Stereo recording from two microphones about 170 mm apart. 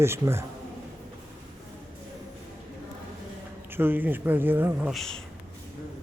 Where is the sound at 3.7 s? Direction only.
10° right (ahead or behind).